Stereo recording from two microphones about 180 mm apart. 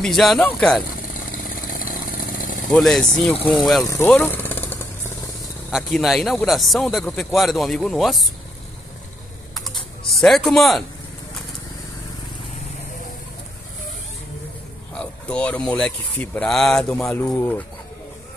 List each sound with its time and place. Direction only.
0.0 s a man's voice: centre (ahead or behind)
1.5 s vehicle: 50° left (ahead or behind)
2.7 s a man's voice: 5° left (ahead or behind)
3.8 s speech: 10° left (ahead or behind)
5.7 s a man's voice: centre (ahead or behind)
9.5 s typing: centre (ahead or behind)
15.0 s a man's voice: 5° left (ahead or behind)